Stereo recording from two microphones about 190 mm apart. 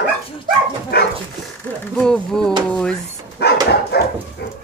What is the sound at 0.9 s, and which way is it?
Dog, 55° left (ahead or behind).